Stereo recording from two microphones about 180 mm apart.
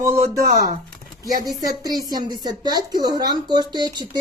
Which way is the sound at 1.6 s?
20° right (ahead or behind).